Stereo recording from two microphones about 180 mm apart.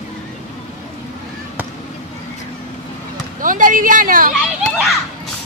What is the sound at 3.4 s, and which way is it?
Speech, 50° right (ahead or behind).